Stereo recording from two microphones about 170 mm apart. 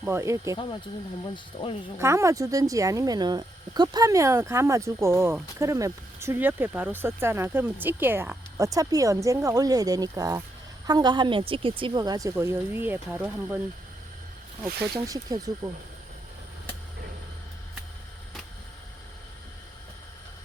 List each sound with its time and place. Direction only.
0.0 s speech: 15° right (ahead or behind)
1.6 s speech: 30° left (ahead or behind)
2.0 s speech: 15° right (ahead or behind)
14.9 s speech: 20° right (ahead or behind)